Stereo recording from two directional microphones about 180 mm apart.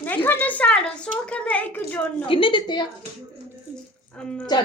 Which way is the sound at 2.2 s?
30° left (ahead or behind).